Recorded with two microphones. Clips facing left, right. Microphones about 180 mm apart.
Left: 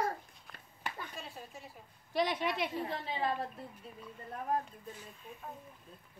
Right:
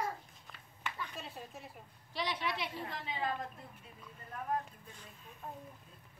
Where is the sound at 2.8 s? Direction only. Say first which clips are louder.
Left 3 dB; 35° left (ahead or behind).